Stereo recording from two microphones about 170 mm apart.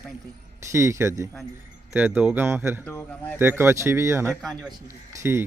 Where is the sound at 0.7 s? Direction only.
15° right (ahead or behind).